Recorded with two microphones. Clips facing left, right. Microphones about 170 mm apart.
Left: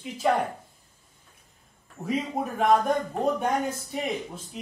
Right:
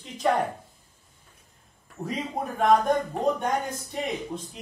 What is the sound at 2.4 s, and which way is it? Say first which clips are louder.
Speech: left 1 dB; 5° left (ahead or behind).